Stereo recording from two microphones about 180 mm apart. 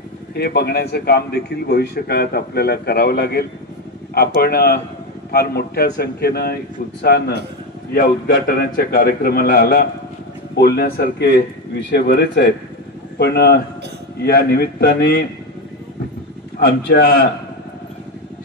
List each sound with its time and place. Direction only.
0.3 s a man's voice: 60° left (ahead or behind)
8.5 s a man's voice: 55° left (ahead or behind)
16.5 s a man's voice: 70° left (ahead or behind)